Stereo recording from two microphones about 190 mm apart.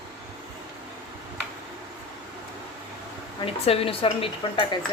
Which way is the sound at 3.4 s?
30° left (ahead or behind).